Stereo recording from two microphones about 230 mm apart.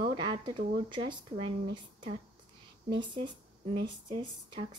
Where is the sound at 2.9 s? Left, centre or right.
Centre.